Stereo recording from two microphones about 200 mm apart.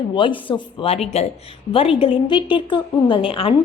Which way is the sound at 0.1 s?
25° left (ahead or behind).